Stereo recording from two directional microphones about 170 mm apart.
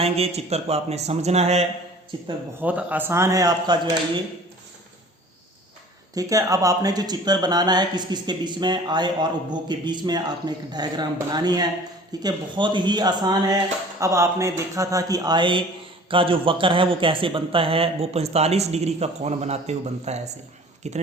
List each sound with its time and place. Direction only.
0.0 s a man's voice: 40° right (ahead or behind)
2.6 s speech: 10° right (ahead or behind)
6.1 s a man's voice: 20° right (ahead or behind); by 21.0 s 40° right (ahead or behind)